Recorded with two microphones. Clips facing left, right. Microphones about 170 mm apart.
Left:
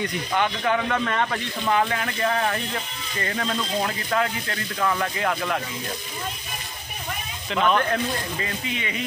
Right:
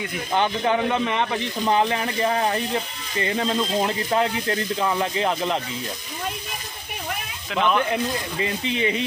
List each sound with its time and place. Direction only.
0.3 s speech: 25° right (ahead or behind)
7.5 s speech: 5° right (ahead or behind)
8.4 s speech: 20° right (ahead or behind)